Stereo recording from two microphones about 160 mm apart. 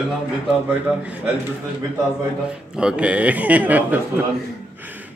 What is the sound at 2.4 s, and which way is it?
A man's voice, 5° right (ahead or behind).